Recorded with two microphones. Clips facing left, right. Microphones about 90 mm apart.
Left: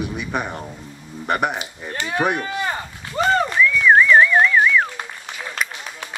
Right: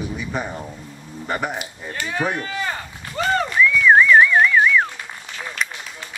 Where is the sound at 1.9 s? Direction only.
25° left (ahead or behind).